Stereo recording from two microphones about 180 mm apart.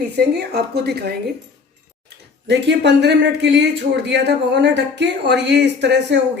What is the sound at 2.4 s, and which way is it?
Speech, 75° right (ahead or behind).